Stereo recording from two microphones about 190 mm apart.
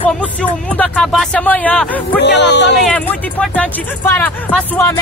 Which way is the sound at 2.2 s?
65° left (ahead or behind).